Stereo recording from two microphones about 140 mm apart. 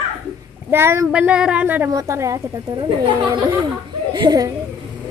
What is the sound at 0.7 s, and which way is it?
Speech, 20° right (ahead or behind).